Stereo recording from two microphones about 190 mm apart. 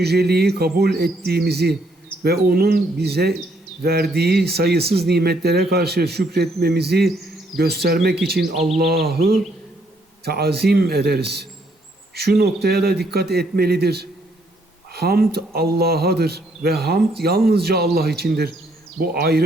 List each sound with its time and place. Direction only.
0.0 s speech: 60° right (ahead or behind)
10.2 s speech: 55° right (ahead or behind)